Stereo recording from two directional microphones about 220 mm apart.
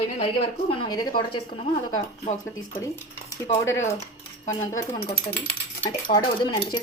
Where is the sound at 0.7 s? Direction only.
20° left (ahead or behind).